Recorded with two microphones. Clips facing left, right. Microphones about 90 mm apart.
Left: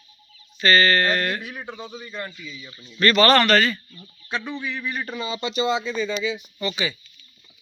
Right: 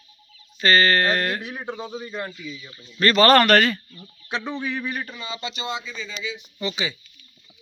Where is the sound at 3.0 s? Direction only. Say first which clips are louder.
Right 1 dB; 35° right (ahead or behind); by 3.8 s 60° right (ahead or behind).